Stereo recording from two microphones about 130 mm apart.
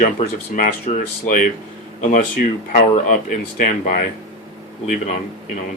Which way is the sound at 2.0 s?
80° left.